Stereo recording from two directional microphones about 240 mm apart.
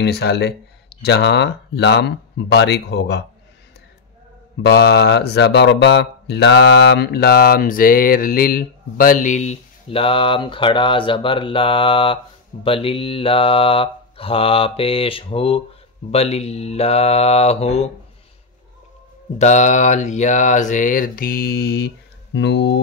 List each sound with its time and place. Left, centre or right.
0.0 s speech: left
4.6 s speech: left
12.6 s mantra: left
19.3 s speech: left